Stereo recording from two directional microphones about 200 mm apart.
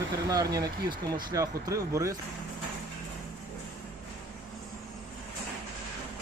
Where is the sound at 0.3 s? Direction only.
20° right (ahead or behind).